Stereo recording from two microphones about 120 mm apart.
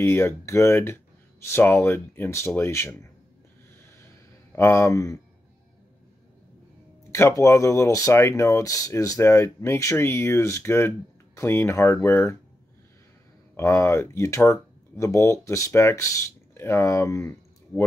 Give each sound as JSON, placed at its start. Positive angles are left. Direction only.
{"t": 0.0, "sound": "speech", "side_deg": 20}
{"t": 4.0, "sound": "a sound", "side_deg": 20}
{"t": 7.1, "sound": "speech", "side_deg": 20}
{"t": 13.6, "sound": "speech", "side_deg": 20}